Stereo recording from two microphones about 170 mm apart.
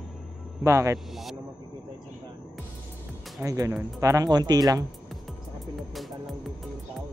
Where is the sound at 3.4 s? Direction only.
20° right (ahead or behind).